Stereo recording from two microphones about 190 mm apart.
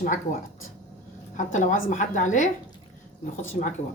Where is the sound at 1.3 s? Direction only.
40° left (ahead or behind).